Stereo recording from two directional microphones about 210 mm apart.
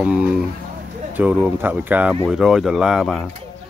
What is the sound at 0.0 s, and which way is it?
Speech, 5° right (ahead or behind).